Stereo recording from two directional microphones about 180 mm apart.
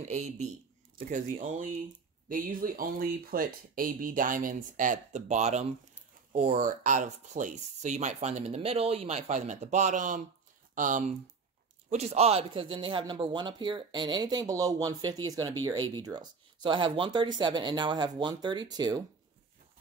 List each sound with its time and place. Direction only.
0.1 s speech: 40° right (ahead or behind); by 19.0 s 20° right (ahead or behind)